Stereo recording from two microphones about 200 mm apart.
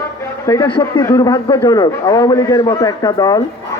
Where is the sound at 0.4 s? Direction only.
20° left (ahead or behind).